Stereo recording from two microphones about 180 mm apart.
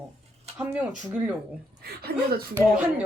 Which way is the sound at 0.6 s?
5° right (ahead or behind).